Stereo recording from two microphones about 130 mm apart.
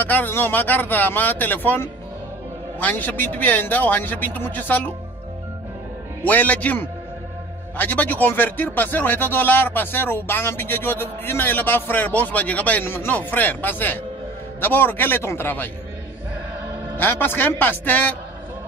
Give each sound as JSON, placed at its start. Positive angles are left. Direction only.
{"t": 0.0, "sound": "speech", "side_deg": 15}
{"t": 6.2, "sound": "speech", "side_deg": 10}
{"t": 16.9, "sound": "speech", "side_deg": 15}